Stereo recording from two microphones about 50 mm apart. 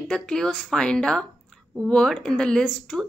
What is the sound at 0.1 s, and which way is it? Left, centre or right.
Speech, centre.